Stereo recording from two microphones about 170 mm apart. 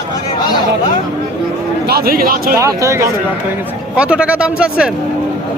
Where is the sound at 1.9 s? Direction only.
65° right (ahead or behind).